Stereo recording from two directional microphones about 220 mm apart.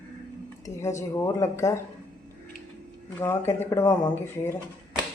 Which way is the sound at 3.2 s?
10° left (ahead or behind).